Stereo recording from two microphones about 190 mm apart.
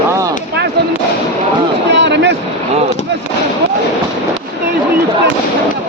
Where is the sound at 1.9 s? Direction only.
65° right (ahead or behind).